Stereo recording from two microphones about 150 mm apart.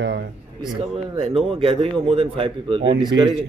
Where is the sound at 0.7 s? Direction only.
35° right (ahead or behind).